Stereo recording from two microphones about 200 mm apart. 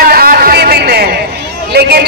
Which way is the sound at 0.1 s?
50° right (ahead or behind).